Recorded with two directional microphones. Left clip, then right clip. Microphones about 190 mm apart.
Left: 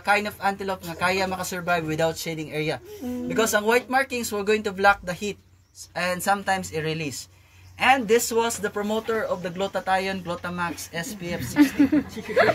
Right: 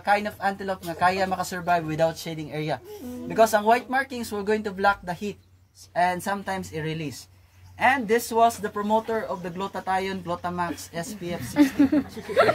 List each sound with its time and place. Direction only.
0.0 s speech: 45° right (ahead or behind)
11.5 s speech: centre (ahead or behind)